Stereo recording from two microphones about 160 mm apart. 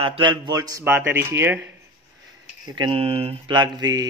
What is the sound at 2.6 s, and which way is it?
Speech, 30° right (ahead or behind).